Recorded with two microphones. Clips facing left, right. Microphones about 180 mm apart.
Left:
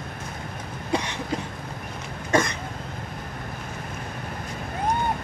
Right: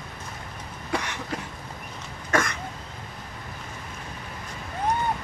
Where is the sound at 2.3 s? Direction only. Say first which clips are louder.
Left 3 dB; 20° left (ahead or behind).